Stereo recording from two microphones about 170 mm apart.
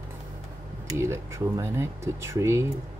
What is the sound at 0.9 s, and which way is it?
Speech, 15° right (ahead or behind).